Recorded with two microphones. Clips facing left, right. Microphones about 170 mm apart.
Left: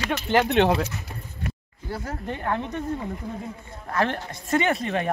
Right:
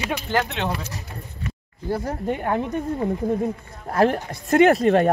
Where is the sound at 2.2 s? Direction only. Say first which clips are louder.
Right 3 dB; 15° right (ahead or behind).